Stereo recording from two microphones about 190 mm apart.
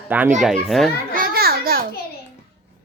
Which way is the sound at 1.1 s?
50° right (ahead or behind).